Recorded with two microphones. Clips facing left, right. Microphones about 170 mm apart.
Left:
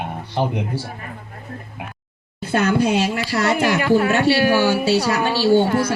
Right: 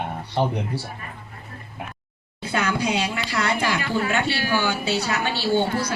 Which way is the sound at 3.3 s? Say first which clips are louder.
Left 6 dB; 50° left (ahead or behind).